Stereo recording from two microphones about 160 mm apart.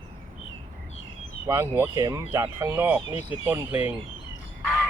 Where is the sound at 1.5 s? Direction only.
15° right (ahead or behind).